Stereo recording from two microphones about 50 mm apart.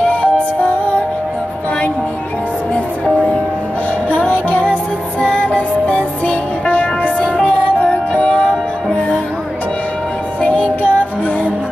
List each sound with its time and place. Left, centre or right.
0.0 s music: left
2.7 s music: left
10.4 s music: left